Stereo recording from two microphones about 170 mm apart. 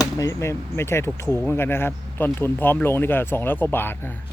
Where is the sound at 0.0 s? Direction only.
20° left (ahead or behind).